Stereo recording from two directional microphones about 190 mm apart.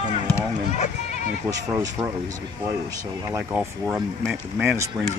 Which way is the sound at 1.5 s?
15° right (ahead or behind).